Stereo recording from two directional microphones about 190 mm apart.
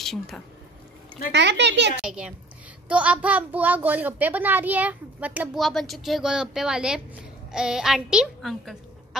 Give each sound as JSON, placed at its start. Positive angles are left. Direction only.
{"t": 0.0, "sound": "speech", "side_deg": 0}
{"t": 1.3, "sound": "speech", "side_deg": -65}
{"t": 2.0, "sound": "a woman's voice", "side_deg": -5}